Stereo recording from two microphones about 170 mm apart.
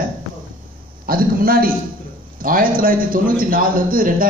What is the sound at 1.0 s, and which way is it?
A man's voice, 60° right (ahead or behind).